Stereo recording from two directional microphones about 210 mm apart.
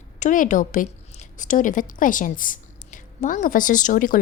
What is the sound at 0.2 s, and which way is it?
A woman's voice, 35° left (ahead or behind).